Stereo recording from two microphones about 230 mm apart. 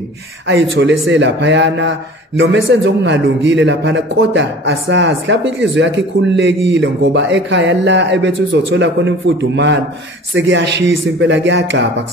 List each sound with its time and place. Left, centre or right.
0.5 s speech: right